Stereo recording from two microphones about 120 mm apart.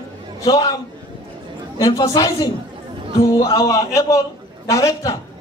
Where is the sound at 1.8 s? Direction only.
30° left (ahead or behind).